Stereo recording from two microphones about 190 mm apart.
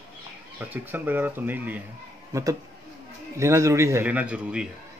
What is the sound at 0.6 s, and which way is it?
A man's voice, 10° right (ahead or behind).